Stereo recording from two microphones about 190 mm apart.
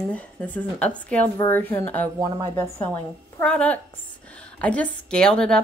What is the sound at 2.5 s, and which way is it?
A woman's voice, 10° left (ahead or behind).